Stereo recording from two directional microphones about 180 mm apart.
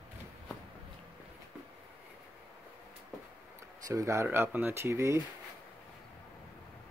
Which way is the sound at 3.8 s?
15° right (ahead or behind).